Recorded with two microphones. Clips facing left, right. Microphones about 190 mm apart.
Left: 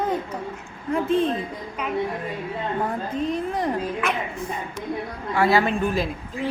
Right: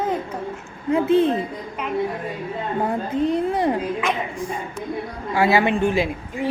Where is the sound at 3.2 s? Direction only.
30° right (ahead or behind).